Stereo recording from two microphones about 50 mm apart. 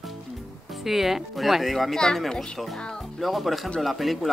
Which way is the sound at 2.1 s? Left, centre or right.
Centre.